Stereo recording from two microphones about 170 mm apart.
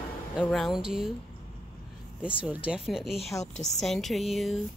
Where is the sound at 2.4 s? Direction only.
5° right (ahead or behind).